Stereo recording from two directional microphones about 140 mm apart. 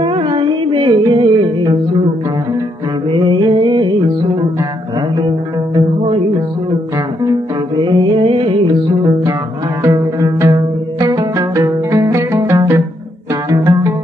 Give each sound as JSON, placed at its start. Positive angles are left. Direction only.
{"t": 0.0, "sound": "music", "side_deg": -35}
{"t": 3.1, "sound": "music", "side_deg": -35}
{"t": 7.7, "sound": "music", "side_deg": -30}
{"t": 9.8, "sound": "zither", "side_deg": -20}
{"t": 13.5, "sound": "music", "side_deg": -25}